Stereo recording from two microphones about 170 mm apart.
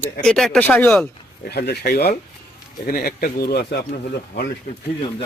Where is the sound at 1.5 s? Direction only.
70° left (ahead or behind).